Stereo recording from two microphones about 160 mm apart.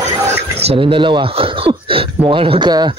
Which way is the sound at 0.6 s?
35° right (ahead or behind).